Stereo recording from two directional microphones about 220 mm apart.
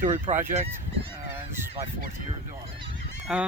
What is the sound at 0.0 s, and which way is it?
Fowl, 35° right (ahead or behind).